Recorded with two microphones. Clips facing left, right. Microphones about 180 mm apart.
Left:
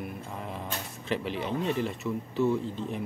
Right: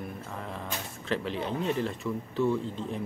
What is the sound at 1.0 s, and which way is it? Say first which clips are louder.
Speech: even; 5° left (ahead or behind).